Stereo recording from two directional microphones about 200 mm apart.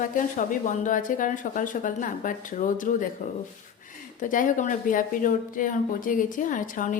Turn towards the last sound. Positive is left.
turn(degrees=40)  # may be behind; listen again after turning